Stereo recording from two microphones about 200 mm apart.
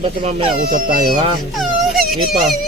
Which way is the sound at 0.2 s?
30° right (ahead or behind).